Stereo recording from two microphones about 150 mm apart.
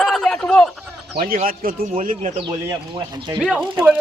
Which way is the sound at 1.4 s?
70° right (ahead or behind).